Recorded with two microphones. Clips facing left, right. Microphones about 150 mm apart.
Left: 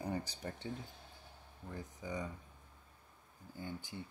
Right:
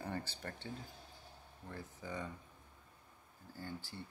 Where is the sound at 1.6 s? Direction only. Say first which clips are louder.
Left 2 dB; 15° left (ahead or behind).